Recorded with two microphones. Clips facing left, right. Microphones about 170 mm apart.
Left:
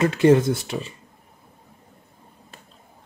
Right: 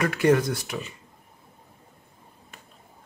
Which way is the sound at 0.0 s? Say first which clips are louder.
Left 5 dB; 25° left (ahead or behind).